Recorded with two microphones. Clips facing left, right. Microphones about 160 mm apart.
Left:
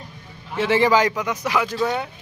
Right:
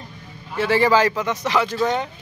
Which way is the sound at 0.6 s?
20° left (ahead or behind).